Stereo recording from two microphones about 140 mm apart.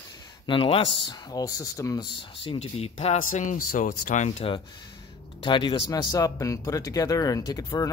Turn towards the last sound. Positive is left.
turn(degrees=25)  # may be behind; listen again after turning